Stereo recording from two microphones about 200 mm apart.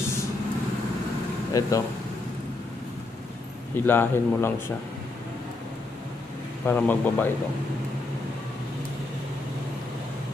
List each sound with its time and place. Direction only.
1.5 s speech: 15° left (ahead or behind)
3.7 s speech: 10° left (ahead or behind)
6.6 s speech: 10° left (ahead or behind)